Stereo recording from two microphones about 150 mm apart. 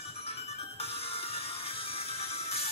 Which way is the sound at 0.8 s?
40° left (ahead or behind).